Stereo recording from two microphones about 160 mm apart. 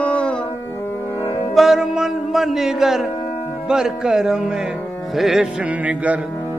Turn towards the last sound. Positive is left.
turn(degrees=-10)  # may be behind; listen again after turning